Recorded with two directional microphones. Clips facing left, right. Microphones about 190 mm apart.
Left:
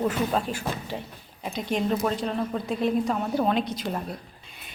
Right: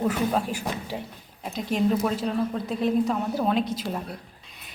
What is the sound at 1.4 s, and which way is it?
A woman's voice, centre (ahead or behind).